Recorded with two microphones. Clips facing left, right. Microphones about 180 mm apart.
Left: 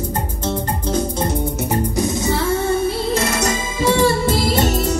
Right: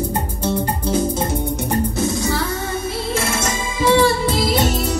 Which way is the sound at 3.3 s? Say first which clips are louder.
Left 2 dB; 45° left (ahead or behind).